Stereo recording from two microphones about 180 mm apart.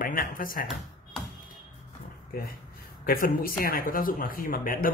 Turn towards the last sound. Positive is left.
turn(degrees=50)  # may be behind; listen again after turning